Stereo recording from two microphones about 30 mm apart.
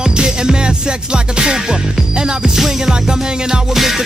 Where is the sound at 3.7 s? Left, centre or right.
Centre.